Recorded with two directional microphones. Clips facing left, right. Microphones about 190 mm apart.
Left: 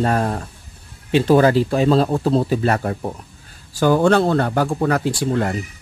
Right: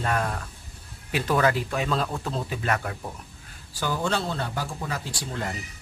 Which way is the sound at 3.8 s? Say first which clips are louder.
Left 13 dB; 60° left (ahead or behind).